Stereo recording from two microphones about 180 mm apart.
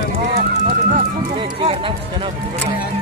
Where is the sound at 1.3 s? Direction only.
30° right (ahead or behind).